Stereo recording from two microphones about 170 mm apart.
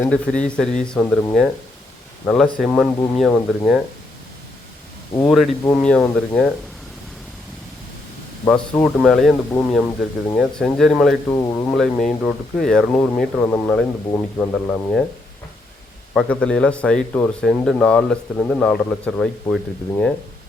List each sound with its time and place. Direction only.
0.0 s speech: 5° left (ahead or behind)
5.2 s speech: centre (ahead or behind)
8.7 s speech: 5° left (ahead or behind)
11.3 s speech: 20° left (ahead or behind)
11.7 s speech: 5° left (ahead or behind)
16.1 s speech: 5° left (ahead or behind)